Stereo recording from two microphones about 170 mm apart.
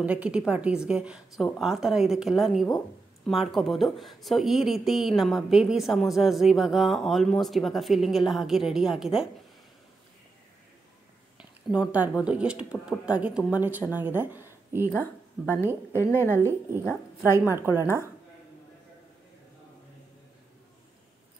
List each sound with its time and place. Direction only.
0.0 s speech: 10° right (ahead or behind)
11.3 s a sound: 5° right (ahead or behind)
12.2 s speech: 5° right (ahead or behind)
14.9 s speech: 10° left (ahead or behind)
16.3 s speech: 15° right (ahead or behind)
16.8 s speech: 15° left (ahead or behind)